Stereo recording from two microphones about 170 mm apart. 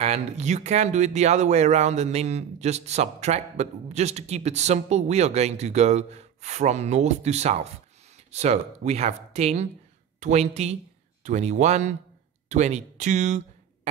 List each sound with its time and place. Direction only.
0.0 s speech: 40° right (ahead or behind)